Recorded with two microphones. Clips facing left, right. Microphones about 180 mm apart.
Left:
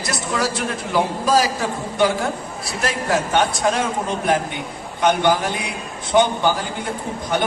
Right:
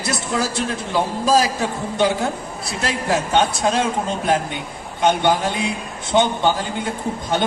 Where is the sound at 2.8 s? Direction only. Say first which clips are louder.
Even; 25° right (ahead or behind).